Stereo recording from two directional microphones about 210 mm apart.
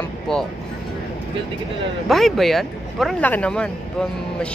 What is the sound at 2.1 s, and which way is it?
Speech, centre (ahead or behind).